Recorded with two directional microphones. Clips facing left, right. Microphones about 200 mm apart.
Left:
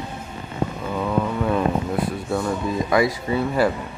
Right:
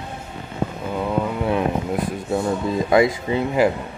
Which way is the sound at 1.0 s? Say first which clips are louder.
Even; 15° right (ahead or behind).